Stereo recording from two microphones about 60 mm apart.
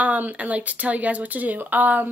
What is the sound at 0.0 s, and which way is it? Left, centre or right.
Speech, right.